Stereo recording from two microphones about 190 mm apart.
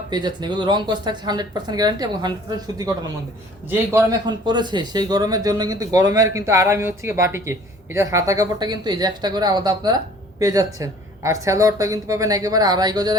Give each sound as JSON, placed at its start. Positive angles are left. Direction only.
{"t": 0.1, "sound": "speech", "side_deg": -20}